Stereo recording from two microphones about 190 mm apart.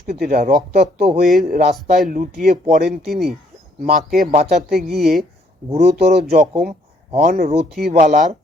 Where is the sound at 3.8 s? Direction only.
50° right (ahead or behind).